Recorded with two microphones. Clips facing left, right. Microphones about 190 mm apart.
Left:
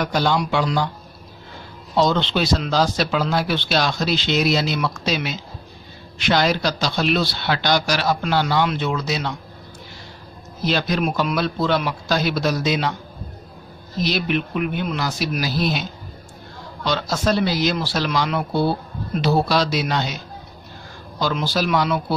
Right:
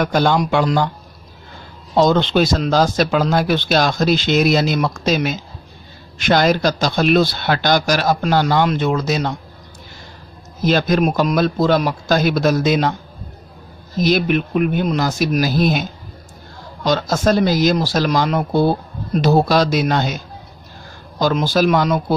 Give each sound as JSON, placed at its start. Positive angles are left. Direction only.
{"t": 0.0, "sound": "speech", "side_deg": -50}
{"t": 2.0, "sound": "speech", "side_deg": -45}
{"t": 10.6, "sound": "speech", "side_deg": -45}
{"t": 13.9, "sound": "speech", "side_deg": -50}
{"t": 21.2, "sound": "speech", "side_deg": -45}